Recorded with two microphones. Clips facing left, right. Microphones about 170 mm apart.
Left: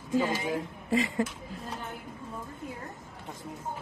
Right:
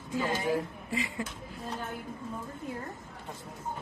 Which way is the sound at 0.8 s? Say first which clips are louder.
Left 7 dB; 40° left (ahead or behind).